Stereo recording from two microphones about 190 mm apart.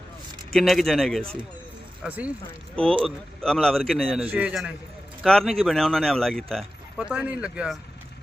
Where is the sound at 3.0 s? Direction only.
5° left (ahead or behind).